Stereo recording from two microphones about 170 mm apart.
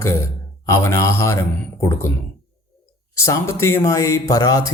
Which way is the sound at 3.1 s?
15° left (ahead or behind).